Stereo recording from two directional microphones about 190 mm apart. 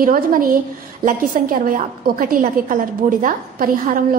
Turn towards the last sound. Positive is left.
turn(degrees=-45)  # may be behind; listen again after turning